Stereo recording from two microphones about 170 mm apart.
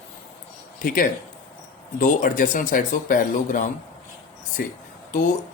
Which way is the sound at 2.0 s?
50° left (ahead or behind).